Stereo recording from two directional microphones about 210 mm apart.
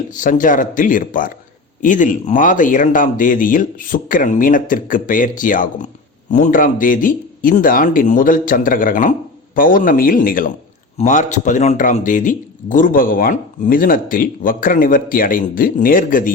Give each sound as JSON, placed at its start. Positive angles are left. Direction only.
{"t": 0.2, "sound": "speech", "side_deg": 40}